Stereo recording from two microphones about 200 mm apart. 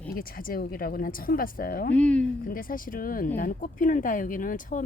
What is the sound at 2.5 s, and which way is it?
Speech, 45° left (ahead or behind).